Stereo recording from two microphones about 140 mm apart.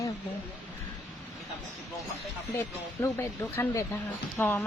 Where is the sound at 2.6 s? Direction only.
15° left (ahead or behind).